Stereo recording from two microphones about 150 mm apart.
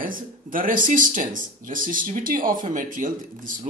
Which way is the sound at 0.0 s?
65° right (ahead or behind).